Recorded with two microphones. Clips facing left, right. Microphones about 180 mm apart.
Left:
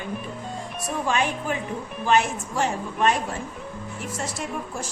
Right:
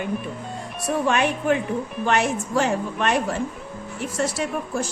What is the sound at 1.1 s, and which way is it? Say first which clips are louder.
A woman's voice: right 4 dB; 65° right (ahead or behind).